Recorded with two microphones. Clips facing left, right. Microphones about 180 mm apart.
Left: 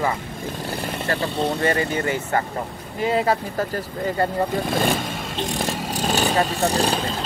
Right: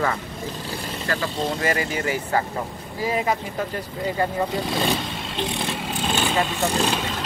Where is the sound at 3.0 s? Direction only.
30° left (ahead or behind).